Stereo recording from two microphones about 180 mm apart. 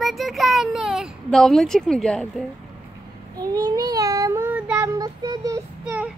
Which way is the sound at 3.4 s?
20° right (ahead or behind).